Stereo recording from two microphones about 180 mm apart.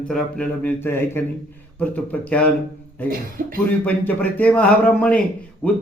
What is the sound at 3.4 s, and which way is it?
Speech, 50° right (ahead or behind).